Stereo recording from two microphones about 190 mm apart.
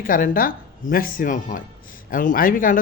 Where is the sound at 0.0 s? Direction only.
50° left (ahead or behind).